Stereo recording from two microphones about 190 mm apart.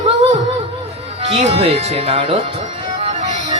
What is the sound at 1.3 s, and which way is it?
A woman's voice, 30° right (ahead or behind).